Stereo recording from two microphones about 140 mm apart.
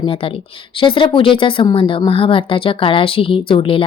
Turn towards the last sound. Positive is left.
turn(degrees=40)  # may be behind; listen again after turning